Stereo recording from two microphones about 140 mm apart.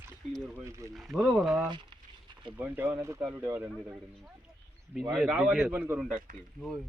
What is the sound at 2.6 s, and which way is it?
A man's voice, 15° right (ahead or behind).